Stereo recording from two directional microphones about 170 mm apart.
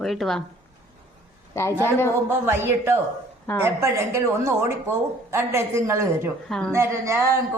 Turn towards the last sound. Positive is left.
turn(degrees=-15)  # may be behind; listen again after turning